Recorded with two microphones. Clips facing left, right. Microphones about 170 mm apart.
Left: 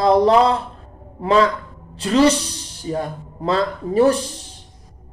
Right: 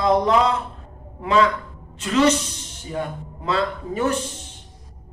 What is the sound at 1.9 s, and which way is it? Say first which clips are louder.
Speech: left 3 dB; 35° left (ahead or behind).